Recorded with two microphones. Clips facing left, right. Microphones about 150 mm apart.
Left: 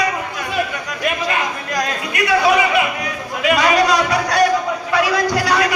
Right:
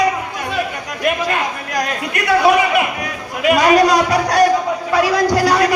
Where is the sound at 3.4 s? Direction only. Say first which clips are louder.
Right 3 dB; 45° right (ahead or behind).